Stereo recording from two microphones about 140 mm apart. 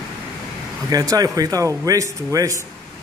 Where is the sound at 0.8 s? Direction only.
25° right (ahead or behind).